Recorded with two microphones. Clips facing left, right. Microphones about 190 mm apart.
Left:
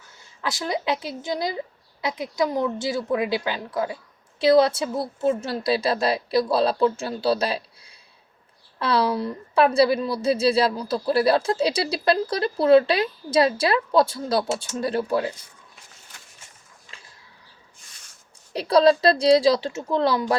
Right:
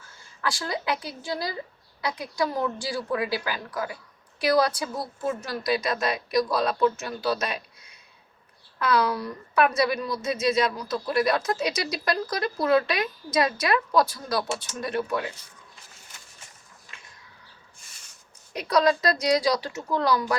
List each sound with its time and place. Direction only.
0.0 s a woman's voice: 20° left (ahead or behind)
18.5 s a woman's voice: 30° left (ahead or behind)